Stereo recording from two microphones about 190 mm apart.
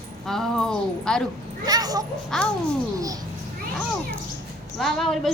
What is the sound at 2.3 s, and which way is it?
Speech, centre (ahead or behind).